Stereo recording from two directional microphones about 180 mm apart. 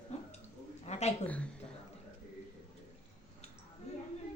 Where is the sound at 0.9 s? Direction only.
35° left (ahead or behind).